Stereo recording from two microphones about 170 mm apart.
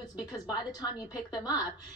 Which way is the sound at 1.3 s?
20° left (ahead or behind).